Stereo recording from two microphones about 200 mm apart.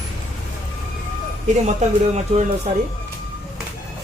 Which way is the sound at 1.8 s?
35° right (ahead or behind).